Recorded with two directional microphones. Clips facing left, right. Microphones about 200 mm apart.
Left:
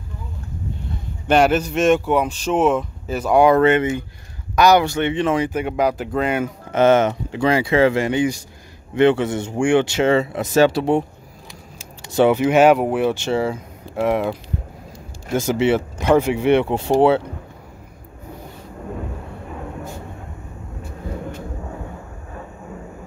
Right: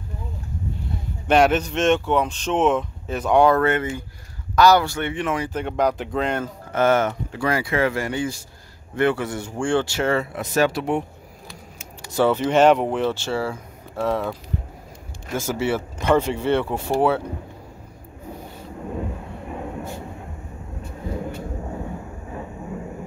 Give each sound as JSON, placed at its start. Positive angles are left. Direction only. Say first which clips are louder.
{"t": 1.2, "sound": "speech", "louder": "left 1 dB", "side_deg": 0}
{"t": 3.5, "sound": "speech", "louder": "left 5 dB", "side_deg": 20}
{"t": 5.5, "sound": "speech", "louder": "left 2 dB", "side_deg": 10}
{"t": 6.7, "sound": "speech", "louder": "left 4 dB", "side_deg": 20}
{"t": 11.8, "sound": "a sound", "louder": "left 4 dB", "side_deg": 20}
{"t": 12.4, "sound": "speech", "louder": "even", "side_deg": 10}
{"t": 13.9, "sound": "a sound", "louder": "left 5 dB", "side_deg": 30}
{"t": 15.3, "sound": "speech", "louder": "left 6 dB", "side_deg": 20}